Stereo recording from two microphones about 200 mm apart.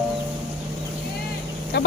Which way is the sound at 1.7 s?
60° left (ahead or behind).